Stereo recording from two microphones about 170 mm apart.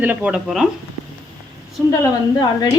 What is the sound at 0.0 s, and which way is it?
Speech, 10° right (ahead or behind).